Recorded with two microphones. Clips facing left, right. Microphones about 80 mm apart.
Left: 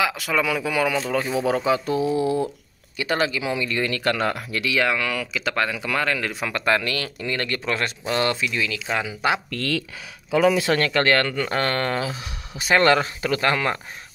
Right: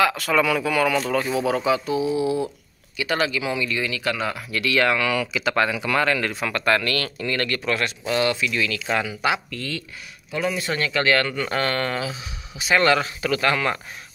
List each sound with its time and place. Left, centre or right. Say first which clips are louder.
0.0 s speech: right 3 dB; centre; by 1.6 s left
2.0 s speech: left 1 dB; left
4.6 s speech: right 2 dB; centre
6.4 s speech: even; centre; by 8.5 s left
8.5 s speech: right 1 dB; centre
9.5 s speech: left 5 dB; left
10.9 s speech: left 1 dB; left